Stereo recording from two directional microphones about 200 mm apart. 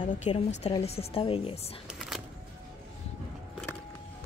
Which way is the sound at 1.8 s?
5° right (ahead or behind).